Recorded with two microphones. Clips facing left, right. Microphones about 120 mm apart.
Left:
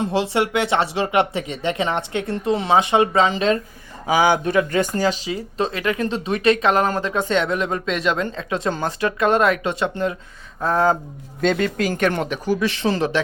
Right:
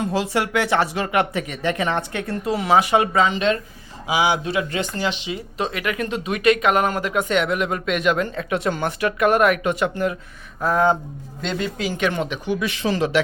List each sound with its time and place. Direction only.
0.0 s speech: 25° left (ahead or behind)
4.0 s speech: 50° left (ahead or behind)
4.9 s speech: 40° left (ahead or behind)
11.3 s speech: 65° left (ahead or behind)
11.8 s speech: 45° left (ahead or behind); by 13.2 s 30° left (ahead or behind)